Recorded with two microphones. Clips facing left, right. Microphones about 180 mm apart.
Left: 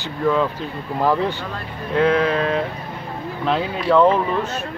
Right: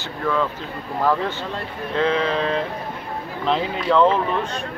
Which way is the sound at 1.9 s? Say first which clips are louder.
Left 3 dB; 10° left (ahead or behind).